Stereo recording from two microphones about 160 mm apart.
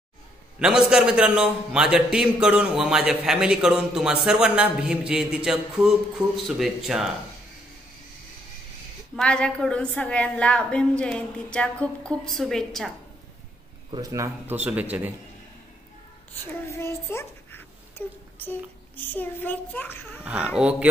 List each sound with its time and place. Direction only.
0.6 s a man's voice: 5° right (ahead or behind)
9.1 s a woman's voice: 5° left (ahead or behind)
13.8 s speech: 30° right (ahead or behind)
14.1 s speech: 15° right (ahead or behind)
16.7 s a child's voice: 15° left (ahead or behind)
20.2 s speech: 10° right (ahead or behind)